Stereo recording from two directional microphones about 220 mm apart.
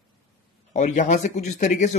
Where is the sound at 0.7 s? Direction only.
35° left (ahead or behind).